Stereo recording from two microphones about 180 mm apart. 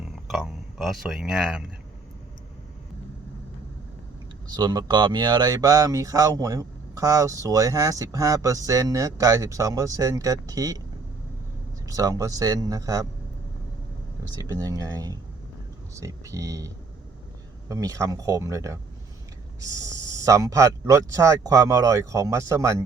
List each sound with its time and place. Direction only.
0.0 s a sound: centre (ahead or behind)
4.5 s speech: 25° right (ahead or behind)
11.9 s speech: 20° right (ahead or behind)
14.3 s speech: 20° right (ahead or behind)